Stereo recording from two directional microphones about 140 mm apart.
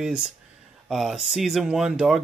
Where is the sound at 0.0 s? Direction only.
5° right (ahead or behind).